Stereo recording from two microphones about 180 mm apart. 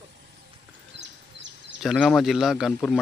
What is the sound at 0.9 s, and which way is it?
Bee, 80° right.